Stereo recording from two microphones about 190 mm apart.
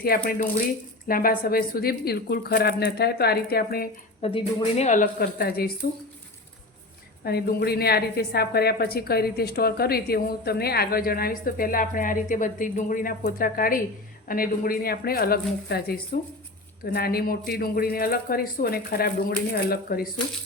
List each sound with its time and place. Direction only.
0.0 s a woman's voice: 55° left (ahead or behind)
4.2 s speech: 30° left (ahead or behind); by 5.9 s 55° left (ahead or behind)
7.3 s a woman's voice: 55° left (ahead or behind)